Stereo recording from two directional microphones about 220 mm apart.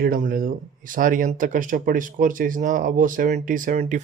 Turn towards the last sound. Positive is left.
turn(degrees=-35)  # may be behind; listen again after turning